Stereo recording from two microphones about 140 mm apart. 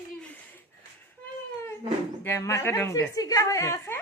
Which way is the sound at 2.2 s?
20° left (ahead or behind).